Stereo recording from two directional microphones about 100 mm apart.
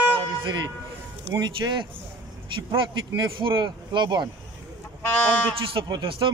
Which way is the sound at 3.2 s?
55° right (ahead or behind).